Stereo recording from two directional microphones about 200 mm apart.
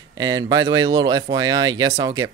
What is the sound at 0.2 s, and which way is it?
A man's voice, 20° right (ahead or behind).